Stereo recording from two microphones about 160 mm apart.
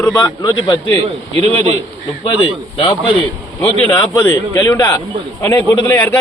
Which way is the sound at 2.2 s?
30° left (ahead or behind).